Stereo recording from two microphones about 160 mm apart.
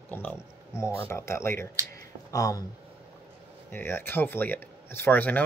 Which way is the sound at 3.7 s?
15° left (ahead or behind).